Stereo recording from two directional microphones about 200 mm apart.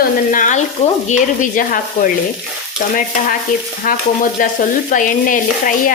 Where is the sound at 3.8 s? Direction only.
40° left (ahead or behind).